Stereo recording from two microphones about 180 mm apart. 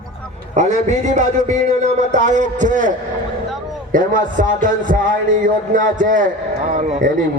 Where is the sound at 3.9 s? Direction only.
50° right (ahead or behind).